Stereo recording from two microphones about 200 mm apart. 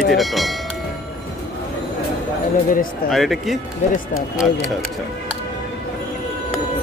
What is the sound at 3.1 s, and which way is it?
Speech, centre (ahead or behind).